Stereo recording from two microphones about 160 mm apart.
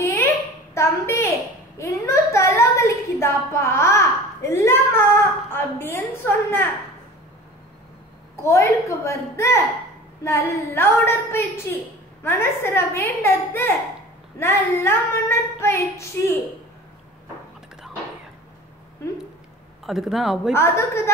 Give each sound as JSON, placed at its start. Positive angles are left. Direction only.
{"t": 0.0, "sound": "a sound", "side_deg": 15}
{"t": 0.7, "sound": "a woman's voice", "side_deg": 15}
{"t": 1.8, "sound": "a sound", "side_deg": 20}
{"t": 5.5, "sound": "a woman's voice", "side_deg": 15}
{"t": 8.5, "sound": "a woman's voice", "side_deg": 20}
{"t": 19.9, "sound": "speech", "side_deg": 0}
{"t": 20.5, "sound": "a woman's voice", "side_deg": 15}